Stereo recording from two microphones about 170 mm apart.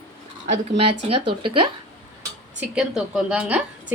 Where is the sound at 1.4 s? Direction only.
30° right (ahead or behind).